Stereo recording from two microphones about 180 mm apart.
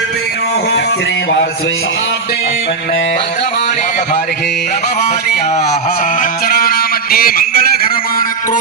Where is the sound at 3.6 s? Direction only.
40° left (ahead or behind).